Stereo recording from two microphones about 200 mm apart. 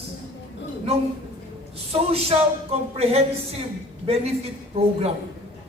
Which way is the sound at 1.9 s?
30° right (ahead or behind).